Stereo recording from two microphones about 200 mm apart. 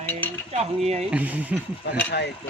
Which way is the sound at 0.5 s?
35° right (ahead or behind).